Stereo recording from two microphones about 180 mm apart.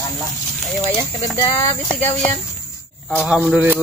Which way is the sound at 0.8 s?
10° left (ahead or behind).